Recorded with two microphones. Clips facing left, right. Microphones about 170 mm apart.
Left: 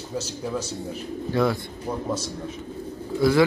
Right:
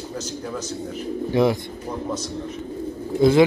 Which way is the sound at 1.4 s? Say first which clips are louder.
Right 4 dB; 20° right (ahead or behind).